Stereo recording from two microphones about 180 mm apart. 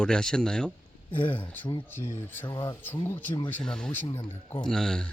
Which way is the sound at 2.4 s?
20° left (ahead or behind).